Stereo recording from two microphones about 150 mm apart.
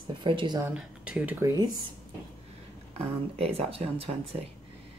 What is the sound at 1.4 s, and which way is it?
Speech, 25° right (ahead or behind).